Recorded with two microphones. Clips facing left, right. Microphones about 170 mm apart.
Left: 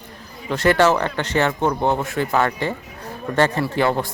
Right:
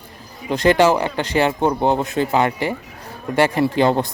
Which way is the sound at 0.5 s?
15° right (ahead or behind).